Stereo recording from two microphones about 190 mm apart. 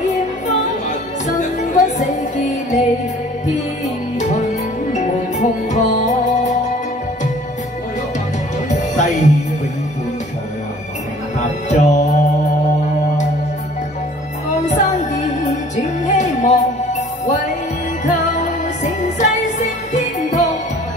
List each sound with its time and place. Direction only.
0.1 s music: 40° left (ahead or behind)
4.9 s music: 40° left (ahead or behind)
8.6 s music: 40° left (ahead or behind)
11.3 s music: 40° left (ahead or behind)
14.7 s music: 40° left (ahead or behind)